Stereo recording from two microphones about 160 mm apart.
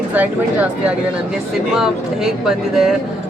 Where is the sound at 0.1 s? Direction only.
10° right (ahead or behind).